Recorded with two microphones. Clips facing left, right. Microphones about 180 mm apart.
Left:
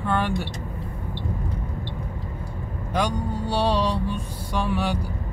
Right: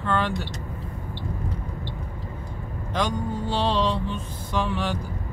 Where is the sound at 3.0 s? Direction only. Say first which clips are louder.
Left 1 dB; 10° left (ahead or behind).